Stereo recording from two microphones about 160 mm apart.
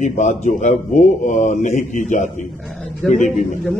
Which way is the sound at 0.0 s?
50° left (ahead or behind).